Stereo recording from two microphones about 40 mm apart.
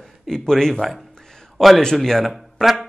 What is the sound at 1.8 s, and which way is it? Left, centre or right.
Speech, centre.